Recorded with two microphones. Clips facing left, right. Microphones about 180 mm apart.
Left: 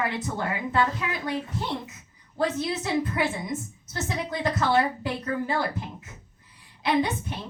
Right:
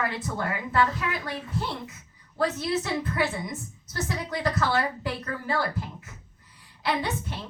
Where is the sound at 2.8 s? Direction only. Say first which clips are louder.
Left 2 dB; 25° left (ahead or behind).